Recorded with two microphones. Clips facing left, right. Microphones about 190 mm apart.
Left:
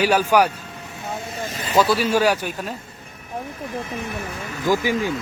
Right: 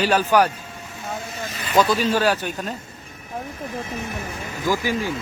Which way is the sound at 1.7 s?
5° left (ahead or behind).